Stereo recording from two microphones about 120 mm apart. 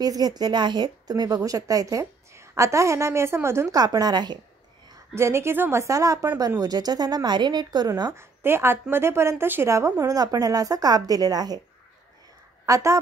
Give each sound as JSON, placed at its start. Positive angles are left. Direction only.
{"t": 0.0, "sound": "speech", "side_deg": -35}
{"t": 3.7, "sound": "speech", "side_deg": -35}
{"t": 5.1, "sound": "speech", "side_deg": -20}
{"t": 8.1, "sound": "a woman's voice", "side_deg": -20}
{"t": 12.6, "sound": "speech", "side_deg": -25}